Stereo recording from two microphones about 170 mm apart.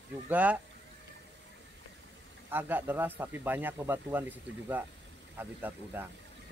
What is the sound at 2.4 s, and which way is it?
Speech, 10° right (ahead or behind).